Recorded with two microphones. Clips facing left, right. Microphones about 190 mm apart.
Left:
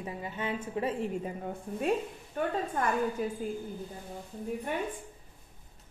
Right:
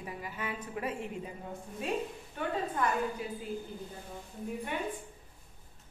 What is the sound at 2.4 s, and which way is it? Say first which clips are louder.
Speech: left 2 dB; 45° left (ahead or behind).